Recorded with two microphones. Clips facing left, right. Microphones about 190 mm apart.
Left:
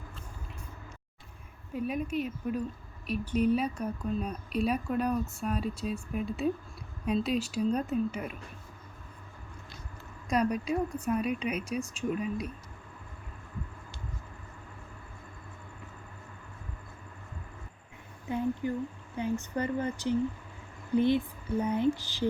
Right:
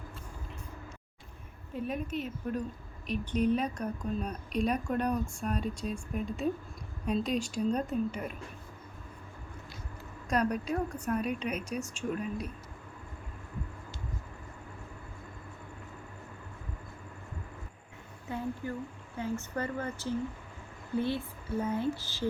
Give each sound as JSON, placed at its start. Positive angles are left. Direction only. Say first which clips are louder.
{"t": 1.7, "sound": "a woman's voice", "louder": "left 3 dB", "side_deg": 10}
{"t": 10.2, "sound": "a woman's voice", "louder": "left 2 dB", "side_deg": 10}
{"t": 18.3, "sound": "a woman's voice", "louder": "left 5 dB", "side_deg": 15}